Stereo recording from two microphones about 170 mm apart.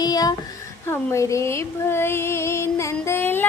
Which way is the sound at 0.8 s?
15° left (ahead or behind).